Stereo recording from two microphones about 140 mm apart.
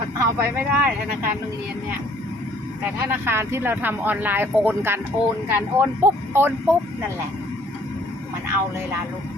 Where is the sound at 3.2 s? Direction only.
15° right (ahead or behind).